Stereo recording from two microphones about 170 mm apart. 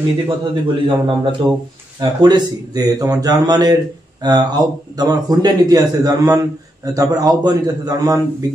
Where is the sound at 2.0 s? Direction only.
25° right (ahead or behind).